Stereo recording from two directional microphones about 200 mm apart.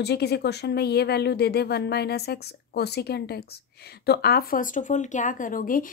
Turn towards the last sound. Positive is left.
turn(degrees=45)  # may be behind; listen again after turning